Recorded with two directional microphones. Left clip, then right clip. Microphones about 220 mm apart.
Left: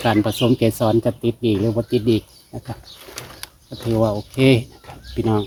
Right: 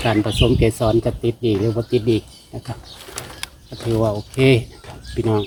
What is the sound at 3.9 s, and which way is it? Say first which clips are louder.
Speech: even; 30° left (ahead or behind).